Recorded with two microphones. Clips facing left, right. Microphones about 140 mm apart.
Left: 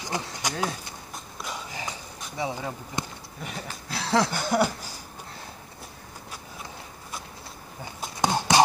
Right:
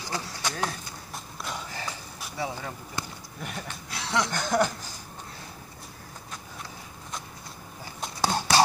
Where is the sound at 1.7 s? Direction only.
15° left (ahead or behind).